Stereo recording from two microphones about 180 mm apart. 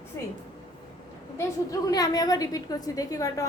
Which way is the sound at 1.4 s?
20° left (ahead or behind).